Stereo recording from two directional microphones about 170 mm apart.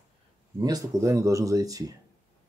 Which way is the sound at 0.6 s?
20° right (ahead or behind).